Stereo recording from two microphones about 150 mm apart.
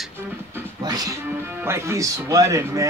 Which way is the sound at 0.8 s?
25° right (ahead or behind).